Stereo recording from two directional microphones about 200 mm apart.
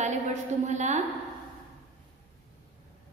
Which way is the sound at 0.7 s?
35° right (ahead or behind).